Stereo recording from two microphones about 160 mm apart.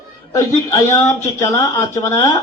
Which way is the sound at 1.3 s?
20° left (ahead or behind).